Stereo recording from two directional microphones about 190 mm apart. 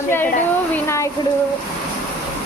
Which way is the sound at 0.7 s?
15° left (ahead or behind).